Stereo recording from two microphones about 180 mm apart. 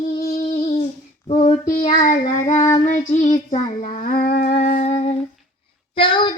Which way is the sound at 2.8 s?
40° left (ahead or behind).